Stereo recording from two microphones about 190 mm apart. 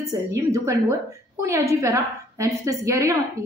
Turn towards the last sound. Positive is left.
turn(degrees=-15)  # may be behind; listen again after turning